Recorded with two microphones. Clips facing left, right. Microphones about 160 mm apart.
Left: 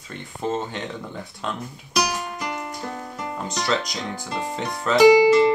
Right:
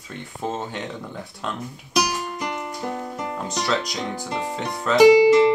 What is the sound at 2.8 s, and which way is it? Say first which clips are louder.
Music: right 7 dB; 20° right (ahead or behind).